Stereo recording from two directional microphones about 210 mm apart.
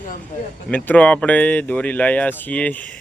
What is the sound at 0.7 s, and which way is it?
Speech, 5° left (ahead or behind).